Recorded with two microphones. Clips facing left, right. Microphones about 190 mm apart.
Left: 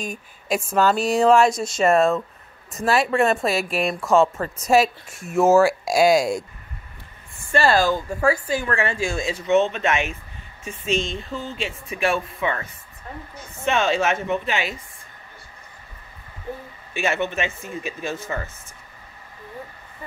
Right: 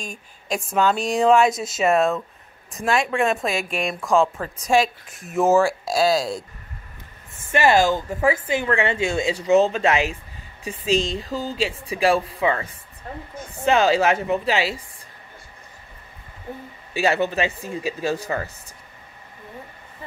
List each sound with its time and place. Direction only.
0.0 s speech: 5° left (ahead or behind)
7.5 s speech: 20° right (ahead or behind)
13.7 s speech: 30° right (ahead or behind)
17.0 s speech: 35° right (ahead or behind)